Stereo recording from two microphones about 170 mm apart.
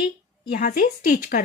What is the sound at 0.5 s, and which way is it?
Speech, 55° left (ahead or behind).